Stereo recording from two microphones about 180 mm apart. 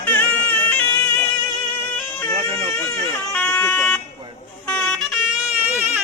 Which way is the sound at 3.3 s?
10° left (ahead or behind).